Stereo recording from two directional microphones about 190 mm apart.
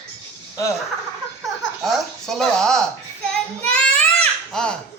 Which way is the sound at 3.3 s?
5° left (ahead or behind).